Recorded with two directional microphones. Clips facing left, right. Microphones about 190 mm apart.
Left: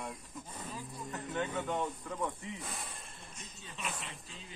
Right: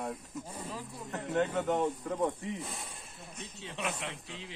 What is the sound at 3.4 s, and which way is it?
Speech, 70° right (ahead or behind).